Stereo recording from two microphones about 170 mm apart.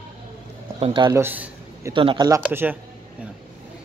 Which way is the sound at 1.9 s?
30° right (ahead or behind).